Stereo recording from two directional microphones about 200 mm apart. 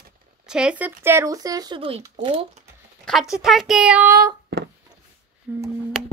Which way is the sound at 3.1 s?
Centre (ahead or behind).